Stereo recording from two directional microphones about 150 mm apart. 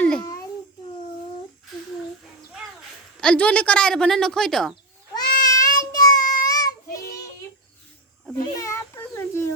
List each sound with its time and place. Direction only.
3.2 s speech: 10° left (ahead or behind)
5.1 s cat: 25° left (ahead or behind)
5.9 s child singing: 25° left (ahead or behind)
8.5 s a sound: 20° left (ahead or behind)